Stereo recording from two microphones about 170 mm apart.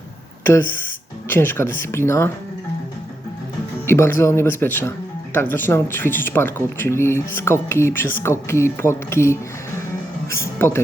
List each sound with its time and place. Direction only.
0.4 s speech: 10° left (ahead or behind)
3.8 s speech: 15° left (ahead or behind)